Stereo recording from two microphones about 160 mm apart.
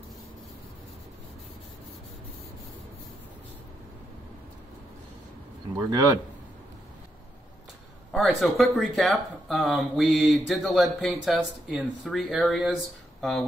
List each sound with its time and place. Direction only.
5.8 s speech: 20° right (ahead or behind)
8.1 s speech: centre (ahead or behind)